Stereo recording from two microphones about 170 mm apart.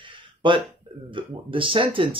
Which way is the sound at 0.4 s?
30° right (ahead or behind).